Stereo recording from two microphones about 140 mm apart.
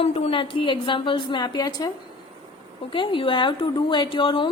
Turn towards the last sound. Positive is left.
turn(degrees=35)  # may be behind; listen again after turning